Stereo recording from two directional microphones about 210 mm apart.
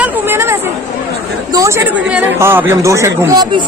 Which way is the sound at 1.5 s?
15° right (ahead or behind).